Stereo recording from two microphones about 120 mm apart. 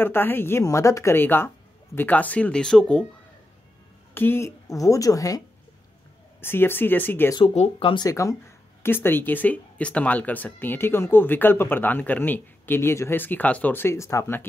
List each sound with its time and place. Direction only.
0.0 s speech: 15° left (ahead or behind)
4.1 s speech: 20° left (ahead or behind)
6.4 s speech: 20° left (ahead or behind)
7.4 s speech: 60° left (ahead or behind)
7.9 s speech: 30° left (ahead or behind)